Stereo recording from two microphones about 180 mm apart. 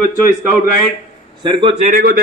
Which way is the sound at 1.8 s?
50° right (ahead or behind).